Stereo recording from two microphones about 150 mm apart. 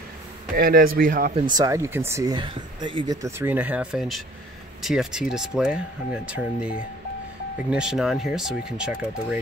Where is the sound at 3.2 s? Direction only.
15° right (ahead or behind).